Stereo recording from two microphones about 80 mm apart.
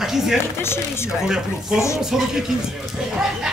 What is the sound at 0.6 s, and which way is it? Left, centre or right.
Speech, left.